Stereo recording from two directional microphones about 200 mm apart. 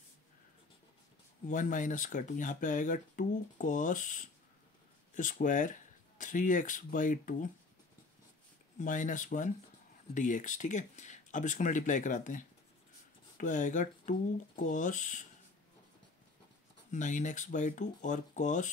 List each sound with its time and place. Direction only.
1.5 s speech: 40° left (ahead or behind)
8.7 s speech: 40° left (ahead or behind)
16.9 s speech: 40° left (ahead or behind)